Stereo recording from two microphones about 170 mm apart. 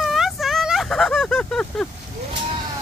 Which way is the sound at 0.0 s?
Centre (ahead or behind).